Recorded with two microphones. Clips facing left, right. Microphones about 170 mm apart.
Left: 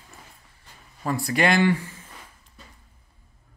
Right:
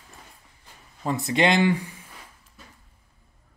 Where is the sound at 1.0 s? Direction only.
20° right (ahead or behind).